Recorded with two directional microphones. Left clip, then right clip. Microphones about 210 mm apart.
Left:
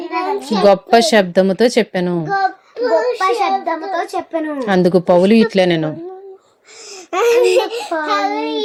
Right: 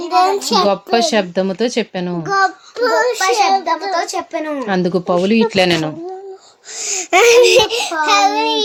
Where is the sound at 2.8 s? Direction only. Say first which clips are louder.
Right 1 dB; 50° right (ahead or behind).